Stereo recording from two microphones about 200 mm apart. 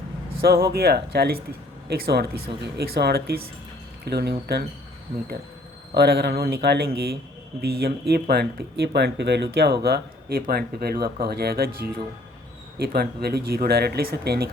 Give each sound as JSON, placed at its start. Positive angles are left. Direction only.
{"t": 0.4, "sound": "speech", "side_deg": -50}
{"t": 5.9, "sound": "speech", "side_deg": -55}